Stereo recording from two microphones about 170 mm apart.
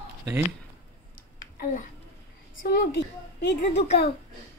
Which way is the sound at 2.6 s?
80° left.